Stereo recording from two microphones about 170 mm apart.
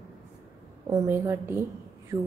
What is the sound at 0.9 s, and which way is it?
A woman's voice, 15° right (ahead or behind).